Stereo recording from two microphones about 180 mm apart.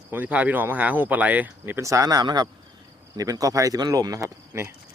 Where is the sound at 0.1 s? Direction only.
10° right (ahead or behind).